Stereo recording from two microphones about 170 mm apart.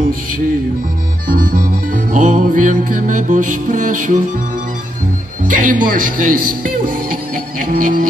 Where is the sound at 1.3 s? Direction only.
55° right (ahead or behind).